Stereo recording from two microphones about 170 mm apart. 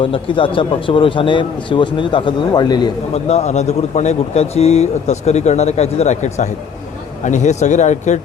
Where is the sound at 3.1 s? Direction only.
40° left (ahead or behind).